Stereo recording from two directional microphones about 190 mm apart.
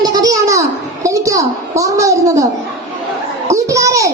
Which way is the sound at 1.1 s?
15° right (ahead or behind).